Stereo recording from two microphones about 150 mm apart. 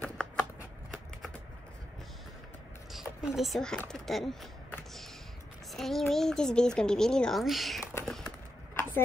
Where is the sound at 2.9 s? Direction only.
5° right (ahead or behind).